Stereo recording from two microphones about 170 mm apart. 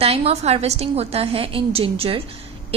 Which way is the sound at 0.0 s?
35° right (ahead or behind).